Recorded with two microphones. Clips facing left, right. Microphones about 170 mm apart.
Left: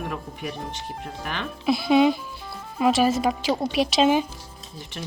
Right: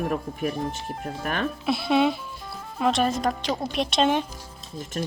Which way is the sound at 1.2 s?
45° right (ahead or behind).